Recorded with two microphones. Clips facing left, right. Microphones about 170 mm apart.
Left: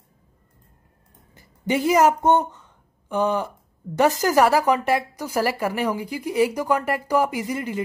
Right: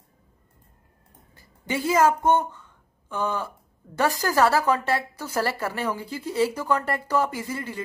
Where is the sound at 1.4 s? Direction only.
20° left (ahead or behind).